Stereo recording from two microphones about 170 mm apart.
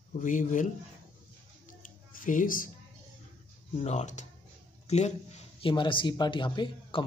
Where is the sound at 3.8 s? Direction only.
45° left (ahead or behind).